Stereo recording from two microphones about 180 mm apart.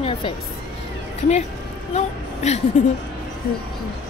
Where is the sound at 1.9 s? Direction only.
35° left (ahead or behind).